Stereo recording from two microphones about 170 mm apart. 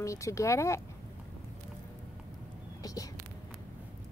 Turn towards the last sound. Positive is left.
turn(degrees=20)  # may be behind; listen again after turning